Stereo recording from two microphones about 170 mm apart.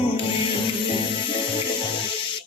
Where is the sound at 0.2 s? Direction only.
30° left (ahead or behind).